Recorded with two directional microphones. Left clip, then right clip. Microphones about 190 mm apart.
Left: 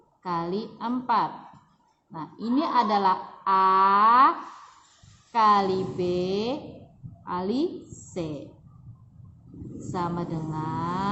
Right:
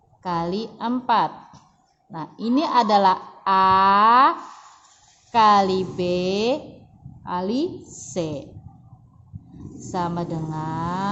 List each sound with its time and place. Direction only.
0.2 s a woman's voice: 35° right (ahead or behind)
9.9 s a woman's voice: 35° right (ahead or behind)